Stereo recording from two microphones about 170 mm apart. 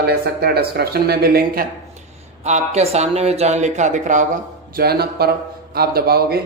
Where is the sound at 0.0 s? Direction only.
70° right (ahead or behind).